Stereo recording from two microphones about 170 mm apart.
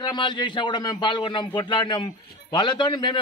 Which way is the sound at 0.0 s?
25° left (ahead or behind).